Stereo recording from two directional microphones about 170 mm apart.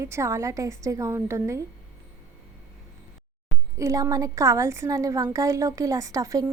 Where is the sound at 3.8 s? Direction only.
20° right (ahead or behind).